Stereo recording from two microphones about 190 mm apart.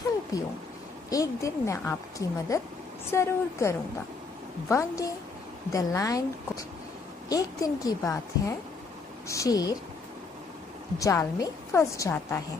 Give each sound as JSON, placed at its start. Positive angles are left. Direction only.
{"t": 1.1, "sound": "a woman's voice", "side_deg": 15}
{"t": 11.0, "sound": "a woman's voice", "side_deg": 15}